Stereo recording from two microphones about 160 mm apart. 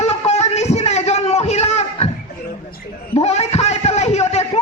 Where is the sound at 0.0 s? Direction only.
40° left (ahead or behind).